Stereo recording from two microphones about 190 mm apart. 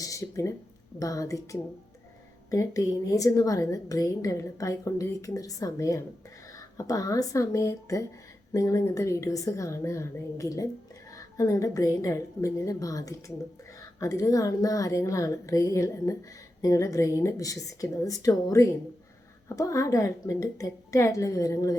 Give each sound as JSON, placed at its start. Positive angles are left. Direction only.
{"t": 0.0, "sound": "a woman's voice", "side_deg": 15}
{"t": 2.5, "sound": "a woman's voice", "side_deg": 20}